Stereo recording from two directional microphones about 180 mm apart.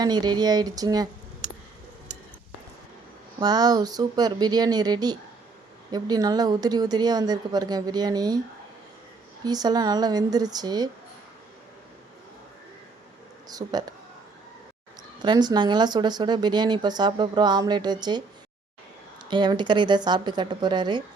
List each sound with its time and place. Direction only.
0.0 s speech: 25° right (ahead or behind)
3.4 s speech: 20° right (ahead or behind)
9.4 s speech: 20° right (ahead or behind)
13.5 s speech: 20° right (ahead or behind)
15.2 s speech: 25° right (ahead or behind)
19.2 s speech: 25° right (ahead or behind)